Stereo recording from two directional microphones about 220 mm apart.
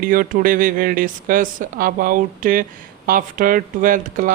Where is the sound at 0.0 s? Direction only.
40° right (ahead or behind).